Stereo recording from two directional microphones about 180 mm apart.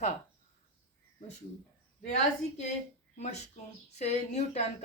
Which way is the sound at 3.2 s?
40° left (ahead or behind).